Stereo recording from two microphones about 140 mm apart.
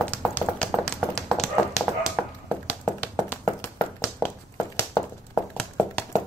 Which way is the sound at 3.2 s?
15° left (ahead or behind).